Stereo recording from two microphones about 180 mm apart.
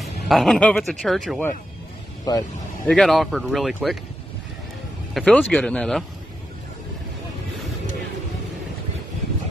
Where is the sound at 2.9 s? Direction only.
Centre (ahead or behind).